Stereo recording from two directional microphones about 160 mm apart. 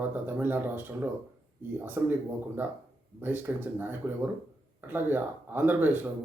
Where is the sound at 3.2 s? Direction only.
10° right (ahead or behind).